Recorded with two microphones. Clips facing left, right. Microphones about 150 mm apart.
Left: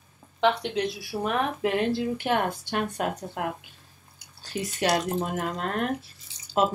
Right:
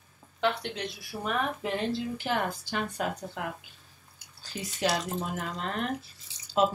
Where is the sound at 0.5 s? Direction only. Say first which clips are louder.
Left 6 dB; 90° left; by 3.5 s 55° left (ahead or behind).